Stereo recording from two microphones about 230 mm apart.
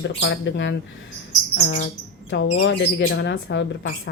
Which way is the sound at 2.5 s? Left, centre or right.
Left.